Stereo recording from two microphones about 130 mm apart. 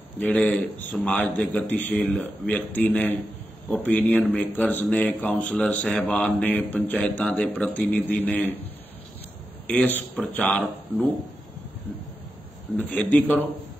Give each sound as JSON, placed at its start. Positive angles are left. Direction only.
{"t": 0.2, "sound": "speech", "side_deg": 10}
{"t": 9.7, "sound": "speech", "side_deg": 10}
{"t": 12.7, "sound": "speech", "side_deg": 10}